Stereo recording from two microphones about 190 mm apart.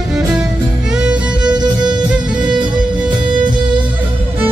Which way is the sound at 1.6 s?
25° right (ahead or behind).